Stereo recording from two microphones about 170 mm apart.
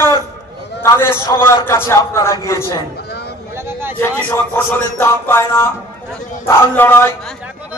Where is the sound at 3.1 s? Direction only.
75° left (ahead or behind).